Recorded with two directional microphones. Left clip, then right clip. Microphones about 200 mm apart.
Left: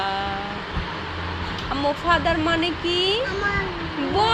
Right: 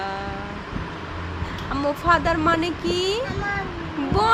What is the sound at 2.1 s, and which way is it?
Speech, 30° right (ahead or behind).